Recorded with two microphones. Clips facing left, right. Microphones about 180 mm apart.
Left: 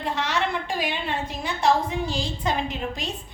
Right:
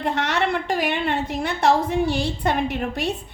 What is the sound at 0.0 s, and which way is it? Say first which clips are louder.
A woman's voice: right 3 dB; 65° right (ahead or behind).